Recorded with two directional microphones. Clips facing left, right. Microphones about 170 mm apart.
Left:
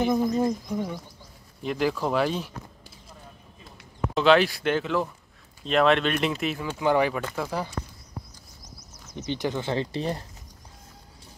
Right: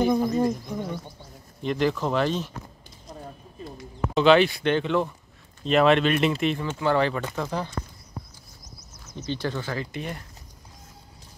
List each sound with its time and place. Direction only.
0.0 s speech: centre (ahead or behind)
4.1 s speech: centre (ahead or behind)
9.1 s speech: 15° left (ahead or behind)